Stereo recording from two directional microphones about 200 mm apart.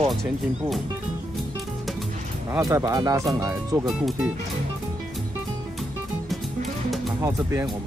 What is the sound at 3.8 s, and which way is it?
Speech, centre (ahead or behind).